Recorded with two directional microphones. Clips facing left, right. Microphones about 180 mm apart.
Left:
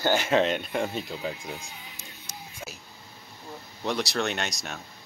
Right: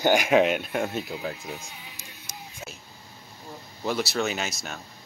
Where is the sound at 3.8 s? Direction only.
Centre (ahead or behind).